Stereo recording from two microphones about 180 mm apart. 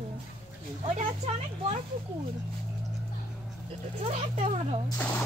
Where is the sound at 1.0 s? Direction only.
35° right (ahead or behind).